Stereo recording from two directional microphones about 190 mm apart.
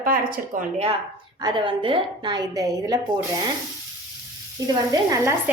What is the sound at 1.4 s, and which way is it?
A woman's voice, 25° right (ahead or behind).